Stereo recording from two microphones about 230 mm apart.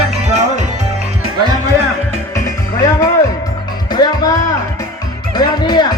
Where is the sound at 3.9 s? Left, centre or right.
Centre.